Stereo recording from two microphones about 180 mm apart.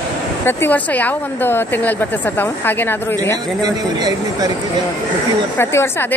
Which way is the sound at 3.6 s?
20° right (ahead or behind).